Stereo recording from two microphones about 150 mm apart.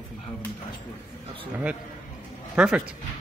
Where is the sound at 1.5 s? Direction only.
10° right (ahead or behind).